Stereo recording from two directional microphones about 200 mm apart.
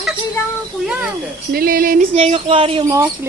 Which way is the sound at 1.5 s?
45° right (ahead or behind).